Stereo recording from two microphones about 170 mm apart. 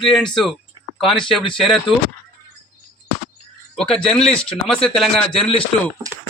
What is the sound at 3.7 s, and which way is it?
Speech, 5° left (ahead or behind).